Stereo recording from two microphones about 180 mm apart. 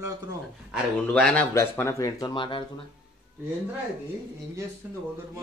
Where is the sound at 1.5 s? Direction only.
15° left (ahead or behind).